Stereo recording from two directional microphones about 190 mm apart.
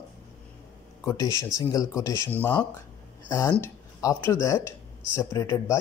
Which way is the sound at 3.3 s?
20° left (ahead or behind).